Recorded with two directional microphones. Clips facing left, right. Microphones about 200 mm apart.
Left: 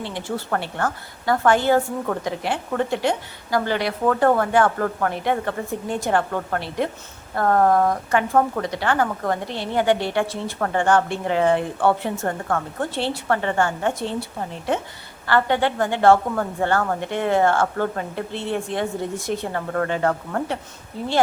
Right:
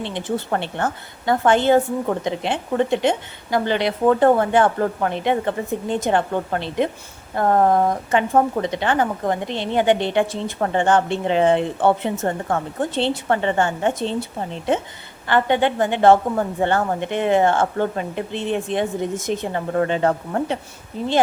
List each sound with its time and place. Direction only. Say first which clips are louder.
0.0 s speech: right 3 dB; 20° right (ahead or behind)